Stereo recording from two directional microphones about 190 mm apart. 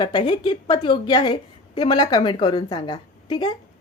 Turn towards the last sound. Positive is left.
turn(degrees=20)  # may be behind; listen again after turning